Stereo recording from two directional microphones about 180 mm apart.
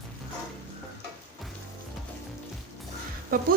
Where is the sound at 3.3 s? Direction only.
55° right (ahead or behind).